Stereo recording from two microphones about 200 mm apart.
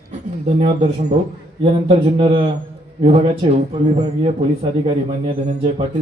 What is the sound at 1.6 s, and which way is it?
A man's voice, 30° right (ahead or behind).